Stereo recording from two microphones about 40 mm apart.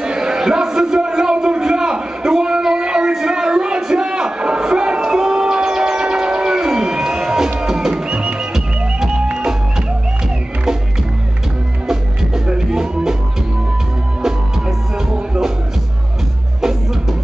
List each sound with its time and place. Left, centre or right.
0.0 s a sound: centre
7.6 s music: centre
11.9 s music: centre
15.0 s music: centre